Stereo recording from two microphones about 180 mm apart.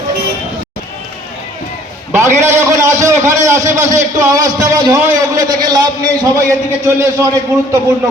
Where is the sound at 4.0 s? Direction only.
15° right (ahead or behind).